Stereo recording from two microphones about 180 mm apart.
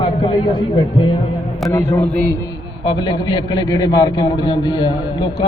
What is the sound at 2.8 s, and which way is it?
A man's voice, 25° left (ahead or behind).